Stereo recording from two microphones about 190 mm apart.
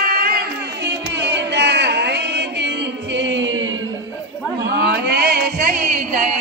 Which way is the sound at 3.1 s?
70° right (ahead or behind).